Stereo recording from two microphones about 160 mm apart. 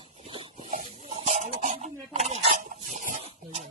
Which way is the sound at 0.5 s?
55° right (ahead or behind).